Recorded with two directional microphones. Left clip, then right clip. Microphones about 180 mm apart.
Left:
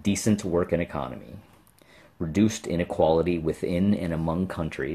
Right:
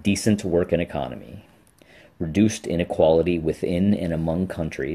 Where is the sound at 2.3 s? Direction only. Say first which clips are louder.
Right 3 dB; 45° left (ahead or behind).